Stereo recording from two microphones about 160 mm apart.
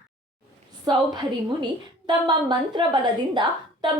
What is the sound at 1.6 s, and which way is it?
A woman's voice, 30° right (ahead or behind).